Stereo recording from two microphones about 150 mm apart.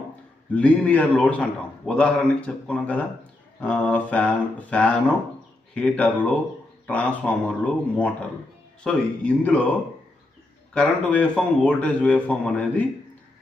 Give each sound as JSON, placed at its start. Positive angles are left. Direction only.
{"t": 0.5, "sound": "a man's voice", "side_deg": 10}
{"t": 10.8, "sound": "a man's voice", "side_deg": 5}